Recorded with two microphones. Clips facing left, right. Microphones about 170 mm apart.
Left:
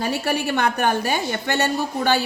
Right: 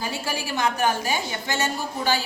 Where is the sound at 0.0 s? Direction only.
65° left (ahead or behind).